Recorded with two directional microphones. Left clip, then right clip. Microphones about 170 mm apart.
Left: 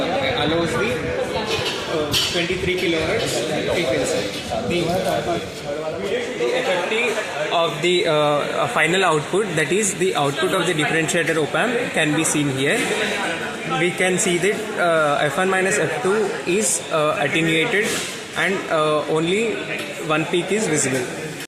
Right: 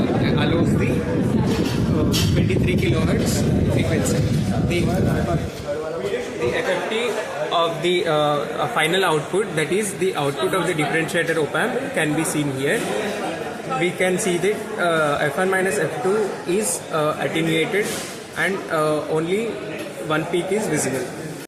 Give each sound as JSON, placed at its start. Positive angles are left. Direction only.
{"t": 7.5, "sound": "a sound", "side_deg": 65}
{"t": 8.7, "sound": "a man's voice", "side_deg": 55}
{"t": 14.0, "sound": "speech", "side_deg": 55}
{"t": 18.3, "sound": "speech", "side_deg": 55}